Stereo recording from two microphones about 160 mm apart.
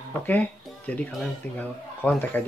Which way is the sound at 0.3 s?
10° left (ahead or behind).